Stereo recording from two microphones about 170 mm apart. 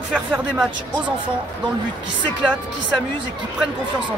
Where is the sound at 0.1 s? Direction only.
5° right (ahead or behind).